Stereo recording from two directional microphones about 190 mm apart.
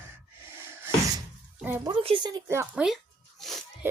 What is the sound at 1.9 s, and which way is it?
Speech, 25° right (ahead or behind).